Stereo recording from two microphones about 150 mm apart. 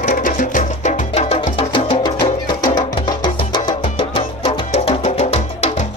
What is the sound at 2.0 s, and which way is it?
Music, 30° left (ahead or behind).